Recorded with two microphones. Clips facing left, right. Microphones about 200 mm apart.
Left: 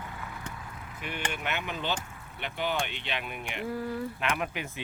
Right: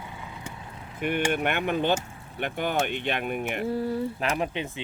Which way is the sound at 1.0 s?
55° right (ahead or behind).